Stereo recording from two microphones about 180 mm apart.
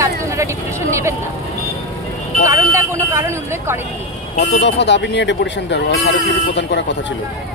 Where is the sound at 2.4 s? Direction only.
15° right (ahead or behind).